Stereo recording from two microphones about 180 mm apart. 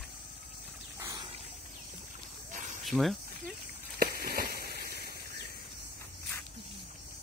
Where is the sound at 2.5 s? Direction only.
45° right (ahead or behind).